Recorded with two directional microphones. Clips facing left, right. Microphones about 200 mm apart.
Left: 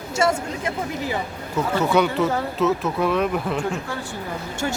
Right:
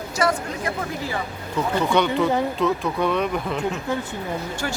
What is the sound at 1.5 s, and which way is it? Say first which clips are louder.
Speech: left 1 dB; 5° left (ahead or behind).